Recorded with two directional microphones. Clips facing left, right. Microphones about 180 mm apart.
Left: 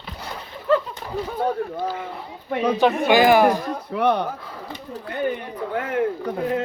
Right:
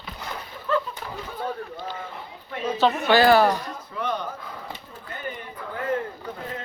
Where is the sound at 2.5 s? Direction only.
70° left (ahead or behind).